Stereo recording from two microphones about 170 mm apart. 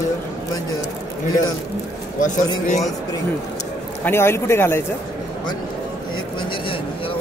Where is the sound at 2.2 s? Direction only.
50° left (ahead or behind).